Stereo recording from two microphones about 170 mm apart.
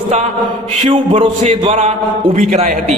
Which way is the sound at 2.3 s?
50° right (ahead or behind).